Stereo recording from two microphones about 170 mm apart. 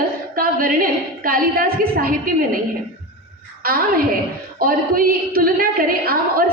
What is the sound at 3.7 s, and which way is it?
A woman's voice, 60° right (ahead or behind).